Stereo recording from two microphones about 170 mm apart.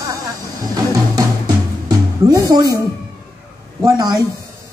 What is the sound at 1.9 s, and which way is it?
Music, 20° right (ahead or behind).